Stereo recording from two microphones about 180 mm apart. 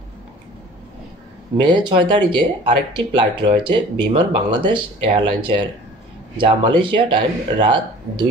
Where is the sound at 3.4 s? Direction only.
25° right (ahead or behind).